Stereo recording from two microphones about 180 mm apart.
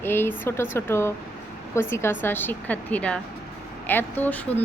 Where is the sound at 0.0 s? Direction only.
10° left (ahead or behind).